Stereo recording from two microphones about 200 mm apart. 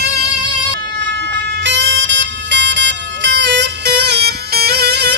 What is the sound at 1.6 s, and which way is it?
Vehicle, 65° right (ahead or behind).